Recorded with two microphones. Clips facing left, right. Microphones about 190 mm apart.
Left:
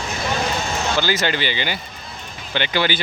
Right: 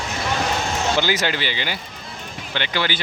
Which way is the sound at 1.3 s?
Centre (ahead or behind).